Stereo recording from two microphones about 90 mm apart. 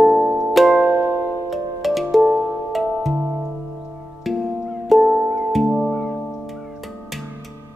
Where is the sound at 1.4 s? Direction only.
Centre (ahead or behind).